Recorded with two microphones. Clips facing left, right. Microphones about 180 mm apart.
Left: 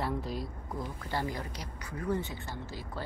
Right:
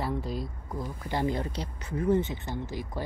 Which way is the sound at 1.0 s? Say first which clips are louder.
Right 7 dB; 20° right (ahead or behind).